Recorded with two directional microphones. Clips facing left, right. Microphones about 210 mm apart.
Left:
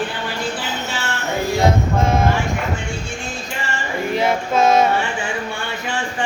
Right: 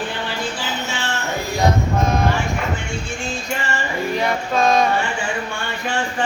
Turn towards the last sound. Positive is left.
turn(degrees=25)  # may be behind; listen again after turning